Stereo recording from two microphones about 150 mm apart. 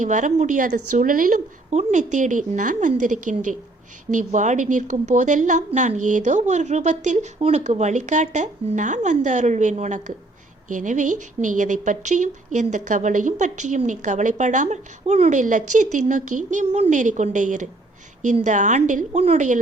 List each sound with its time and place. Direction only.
0.0 s a woman's voice: 55° right (ahead or behind)